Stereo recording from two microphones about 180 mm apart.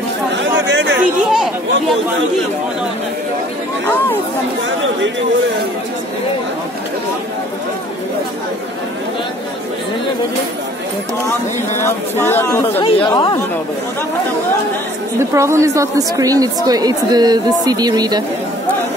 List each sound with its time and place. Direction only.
0.4 s chatter: 80° right
1.3 s speech: centre (ahead or behind)
11.8 s speech: 15° left (ahead or behind)
12.8 s speech: 30° left (ahead or behind)
15.1 s a woman's voice: 15° right (ahead or behind)